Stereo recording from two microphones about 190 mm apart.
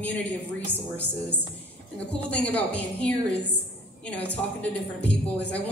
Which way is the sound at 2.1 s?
5° left (ahead or behind).